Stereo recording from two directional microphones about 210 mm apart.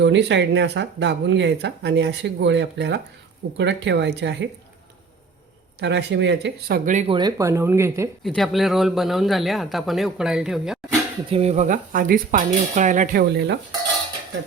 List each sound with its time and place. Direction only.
0.0 s speech: 55° right (ahead or behind)
5.8 s speech: 55° right (ahead or behind)
7.1 s speech: 20° right (ahead or behind)
8.2 s a man's voice: centre (ahead or behind)
11.3 s speech: 30° right (ahead or behind)
13.3 s speech: 55° right (ahead or behind)